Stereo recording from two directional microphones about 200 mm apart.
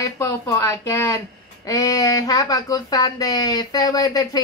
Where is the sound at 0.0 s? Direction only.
15° left (ahead or behind).